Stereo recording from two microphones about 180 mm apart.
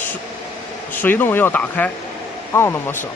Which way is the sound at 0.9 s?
10° left (ahead or behind).